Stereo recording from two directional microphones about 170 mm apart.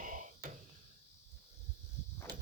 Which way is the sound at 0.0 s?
50° right (ahead or behind).